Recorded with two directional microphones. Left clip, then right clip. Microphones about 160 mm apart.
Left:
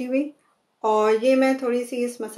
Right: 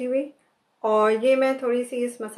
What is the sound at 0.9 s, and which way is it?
Speech, 40° left (ahead or behind).